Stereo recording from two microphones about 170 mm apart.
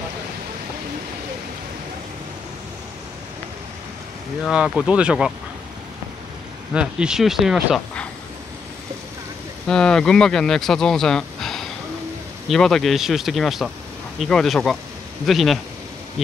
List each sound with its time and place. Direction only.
4.5 s speech: 5° right (ahead or behind)
6.7 s speech: 5° right (ahead or behind)
9.7 s speech: 5° left (ahead or behind)